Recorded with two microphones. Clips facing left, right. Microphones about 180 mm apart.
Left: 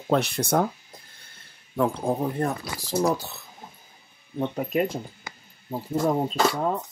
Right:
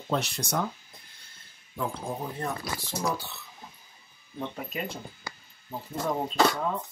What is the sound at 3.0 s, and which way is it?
Speech, 40° left (ahead or behind).